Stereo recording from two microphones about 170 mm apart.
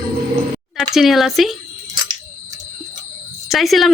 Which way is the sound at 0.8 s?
Centre (ahead or behind).